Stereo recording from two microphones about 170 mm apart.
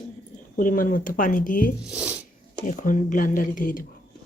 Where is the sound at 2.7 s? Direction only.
50° left (ahead or behind).